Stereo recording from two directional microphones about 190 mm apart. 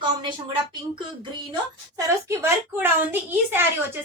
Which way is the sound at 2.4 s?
10° right (ahead or behind).